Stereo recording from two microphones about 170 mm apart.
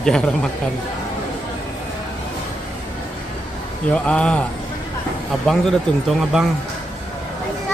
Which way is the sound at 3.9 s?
5° left (ahead or behind).